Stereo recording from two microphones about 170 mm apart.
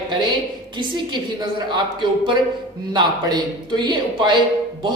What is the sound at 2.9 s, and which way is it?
A man's voice, 25° right (ahead or behind).